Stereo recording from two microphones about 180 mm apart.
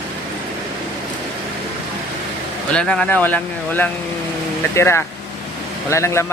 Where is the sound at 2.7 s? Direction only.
5° left (ahead or behind).